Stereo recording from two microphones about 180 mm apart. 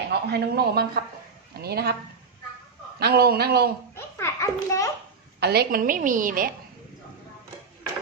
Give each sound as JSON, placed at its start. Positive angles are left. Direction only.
{"t": 0.1, "sound": "speech", "side_deg": -65}
{"t": 3.0, "sound": "speech", "side_deg": -60}
{"t": 3.9, "sound": "a sound", "side_deg": 15}
{"t": 5.4, "sound": "a woman's voice", "side_deg": -65}